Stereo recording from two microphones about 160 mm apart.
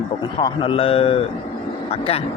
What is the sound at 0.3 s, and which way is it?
A man's voice, 35° left (ahead or behind).